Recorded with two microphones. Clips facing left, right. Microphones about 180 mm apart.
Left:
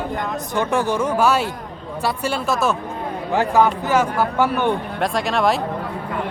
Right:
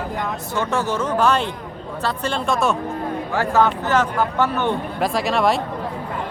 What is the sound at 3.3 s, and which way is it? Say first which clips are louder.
Speech: left 2 dB; 15° left (ahead or behind).